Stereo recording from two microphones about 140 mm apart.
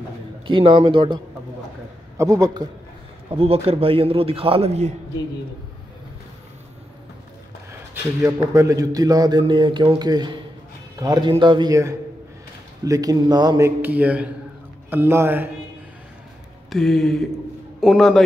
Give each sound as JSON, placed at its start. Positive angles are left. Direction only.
{"t": 0.5, "sound": "speech", "side_deg": -40}
{"t": 2.1, "sound": "speech", "side_deg": -25}
{"t": 3.3, "sound": "a man's voice", "side_deg": -45}
{"t": 8.3, "sound": "speech", "side_deg": -20}
{"t": 13.7, "sound": "a man's voice", "side_deg": -15}
{"t": 16.7, "sound": "a man's voice", "side_deg": 0}